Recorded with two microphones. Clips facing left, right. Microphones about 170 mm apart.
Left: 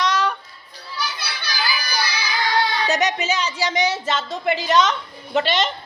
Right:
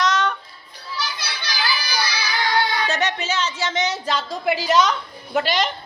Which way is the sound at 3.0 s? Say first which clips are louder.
Left 2 dB; 15° left (ahead or behind).